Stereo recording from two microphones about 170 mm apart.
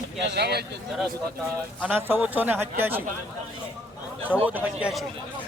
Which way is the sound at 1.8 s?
10° right (ahead or behind).